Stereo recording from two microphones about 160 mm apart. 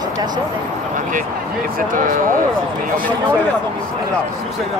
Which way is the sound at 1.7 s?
60° right (ahead or behind).